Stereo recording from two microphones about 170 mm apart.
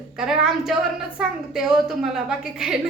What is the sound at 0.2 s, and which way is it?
A woman's voice, centre (ahead or behind).